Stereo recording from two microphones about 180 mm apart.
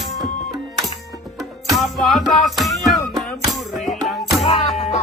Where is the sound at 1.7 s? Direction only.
Centre (ahead or behind).